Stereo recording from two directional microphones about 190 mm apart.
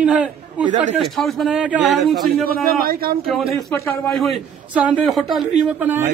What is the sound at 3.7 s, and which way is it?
Speech, 10° left (ahead or behind).